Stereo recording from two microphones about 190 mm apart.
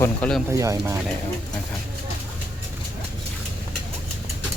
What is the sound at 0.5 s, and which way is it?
Speech, 15° right (ahead or behind).